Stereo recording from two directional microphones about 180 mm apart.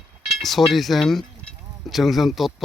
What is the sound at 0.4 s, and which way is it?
Speech, centre (ahead or behind).